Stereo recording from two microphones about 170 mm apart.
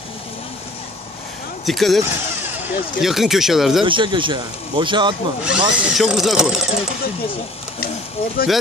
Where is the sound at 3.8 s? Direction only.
30° right (ahead or behind).